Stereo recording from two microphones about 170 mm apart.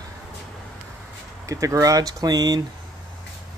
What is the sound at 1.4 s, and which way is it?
Speech, 20° right (ahead or behind).